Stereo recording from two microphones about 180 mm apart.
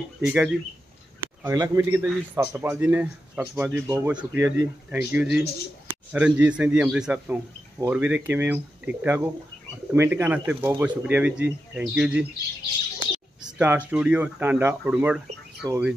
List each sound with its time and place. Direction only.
0.2 s speech: 5° right (ahead or behind)
1.2 s speech: 15° right (ahead or behind)
13.6 s speech: 10° right (ahead or behind)